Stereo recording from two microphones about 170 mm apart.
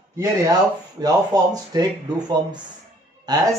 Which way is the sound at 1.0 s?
20° right (ahead or behind).